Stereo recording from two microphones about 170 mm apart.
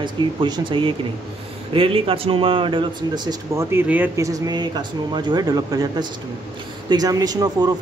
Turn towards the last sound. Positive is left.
turn(degrees=-25)  # may be behind; listen again after turning